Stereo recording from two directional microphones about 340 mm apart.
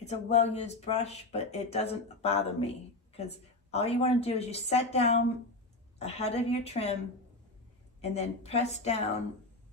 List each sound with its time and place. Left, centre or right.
0.0 s a woman's voice: centre
8.0 s speech: centre